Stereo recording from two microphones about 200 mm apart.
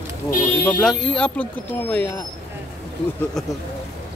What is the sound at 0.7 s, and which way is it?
Speech, 5° left (ahead or behind).